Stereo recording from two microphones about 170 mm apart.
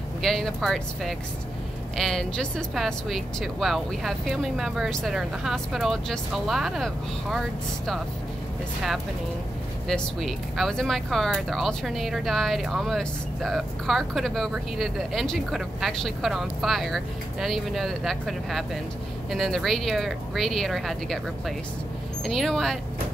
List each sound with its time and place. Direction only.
0.2 s speech: centre (ahead or behind)
9.8 s speech: centre (ahead or behind)